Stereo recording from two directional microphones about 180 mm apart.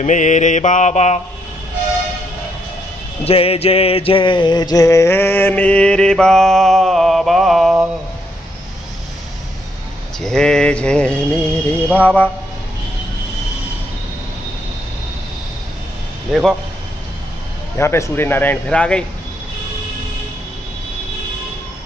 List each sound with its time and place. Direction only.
0.0 s mantra: 40° left (ahead or behind)
3.3 s mantra: 35° left (ahead or behind); by 7.9 s centre (ahead or behind)
10.2 s mantra: 5° left (ahead or behind)
16.3 s speech: centre (ahead or behind)
17.7 s mantra: 15° left (ahead or behind)